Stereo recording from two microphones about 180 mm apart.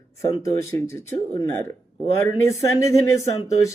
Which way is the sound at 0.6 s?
15° left (ahead or behind).